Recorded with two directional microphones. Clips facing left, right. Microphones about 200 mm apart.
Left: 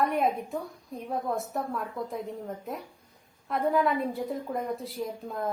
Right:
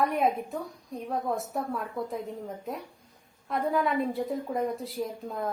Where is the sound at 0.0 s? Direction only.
Centre (ahead or behind).